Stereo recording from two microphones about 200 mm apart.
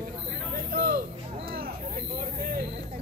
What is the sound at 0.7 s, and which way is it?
Music, 50° right (ahead or behind).